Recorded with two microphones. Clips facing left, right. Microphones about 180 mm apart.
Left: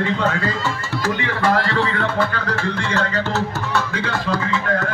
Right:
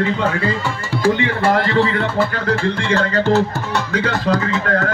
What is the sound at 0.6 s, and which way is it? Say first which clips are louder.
Speech: right 4 dB; 15° right (ahead or behind).